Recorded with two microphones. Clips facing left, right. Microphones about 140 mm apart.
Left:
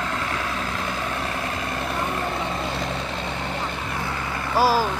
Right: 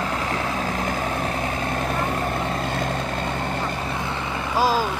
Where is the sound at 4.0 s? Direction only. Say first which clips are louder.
Right 1 dB; 20° right (ahead or behind).